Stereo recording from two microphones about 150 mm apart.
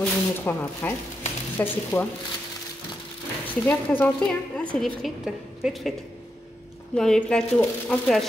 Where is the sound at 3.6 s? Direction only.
10° left (ahead or behind); by 5.8 s 5° right (ahead or behind).